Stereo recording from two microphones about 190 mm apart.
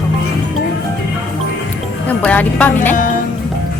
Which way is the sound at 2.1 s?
10° left (ahead or behind).